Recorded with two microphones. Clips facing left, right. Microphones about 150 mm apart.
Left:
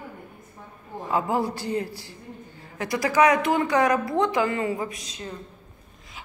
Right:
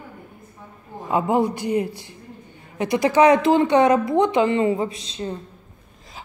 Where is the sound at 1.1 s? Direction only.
20° right (ahead or behind).